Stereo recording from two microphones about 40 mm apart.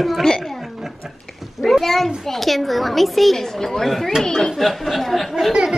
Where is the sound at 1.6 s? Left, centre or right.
Centre.